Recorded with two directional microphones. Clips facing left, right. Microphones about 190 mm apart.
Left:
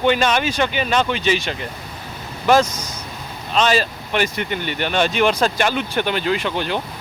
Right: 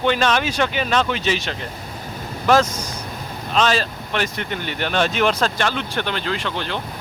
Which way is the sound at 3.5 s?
Centre (ahead or behind).